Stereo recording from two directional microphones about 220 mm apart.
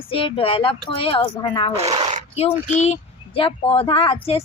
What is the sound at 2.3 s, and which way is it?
Speech, 25° left (ahead or behind).